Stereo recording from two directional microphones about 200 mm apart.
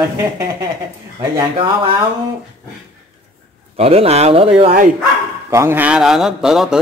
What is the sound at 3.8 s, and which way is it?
Speech, 30° right (ahead or behind).